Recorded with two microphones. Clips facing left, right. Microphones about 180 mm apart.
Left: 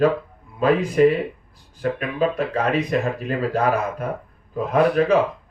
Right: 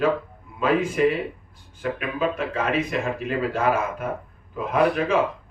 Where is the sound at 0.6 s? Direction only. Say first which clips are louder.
Left 4 dB; 35° left (ahead or behind).